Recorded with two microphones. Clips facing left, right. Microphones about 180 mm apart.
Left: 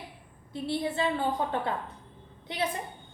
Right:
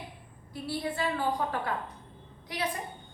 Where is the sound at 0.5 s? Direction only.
25° left (ahead or behind).